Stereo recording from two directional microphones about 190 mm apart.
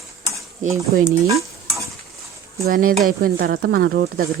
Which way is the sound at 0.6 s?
40° right (ahead or behind).